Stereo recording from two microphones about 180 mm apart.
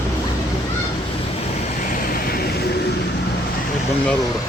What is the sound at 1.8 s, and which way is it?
Vehicle, 50° left (ahead or behind).